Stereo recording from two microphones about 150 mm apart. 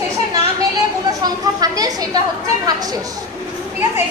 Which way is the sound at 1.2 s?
25° right (ahead or behind).